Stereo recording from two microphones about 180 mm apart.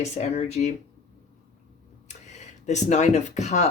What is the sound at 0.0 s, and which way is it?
Speech, 40° left (ahead or behind).